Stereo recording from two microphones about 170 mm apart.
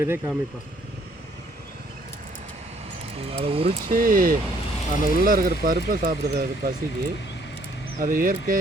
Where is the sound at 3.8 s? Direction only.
55° right (ahead or behind).